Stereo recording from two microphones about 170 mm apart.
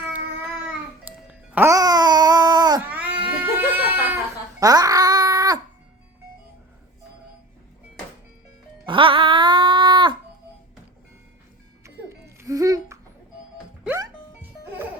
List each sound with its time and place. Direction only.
1.3 s music: 15° right (ahead or behind)
2.9 s cat: 10° right (ahead or behind)
4.6 s a sound: 20° right (ahead or behind)
8.9 s wail: 30° right (ahead or behind)
12.0 s music: 15° right (ahead or behind)